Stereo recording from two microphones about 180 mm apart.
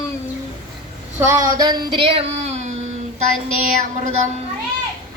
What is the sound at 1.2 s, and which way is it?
Child singing, 15° right (ahead or behind).